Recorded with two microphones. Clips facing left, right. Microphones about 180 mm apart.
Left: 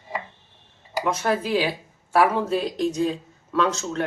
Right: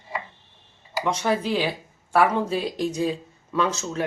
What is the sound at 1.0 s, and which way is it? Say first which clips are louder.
Speech: even; centre (ahead or behind).